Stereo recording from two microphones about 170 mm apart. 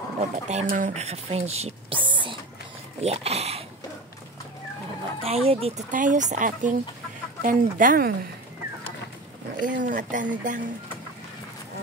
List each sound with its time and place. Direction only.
0.2 s speech: 40° right (ahead or behind)
5.2 s speech: 35° right (ahead or behind)
5.9 s speech: 50° right (ahead or behind)
9.6 s speech: 50° right (ahead or behind)